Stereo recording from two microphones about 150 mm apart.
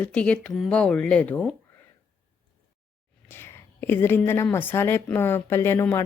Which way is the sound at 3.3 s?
15° left (ahead or behind).